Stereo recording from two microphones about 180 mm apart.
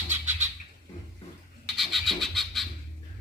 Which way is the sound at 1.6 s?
Centre (ahead or behind).